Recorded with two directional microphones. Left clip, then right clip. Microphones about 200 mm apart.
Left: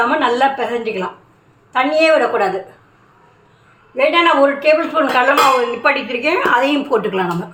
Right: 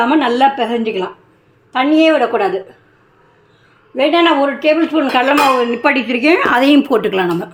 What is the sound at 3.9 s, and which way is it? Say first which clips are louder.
Speech: even; 40° right (ahead or behind).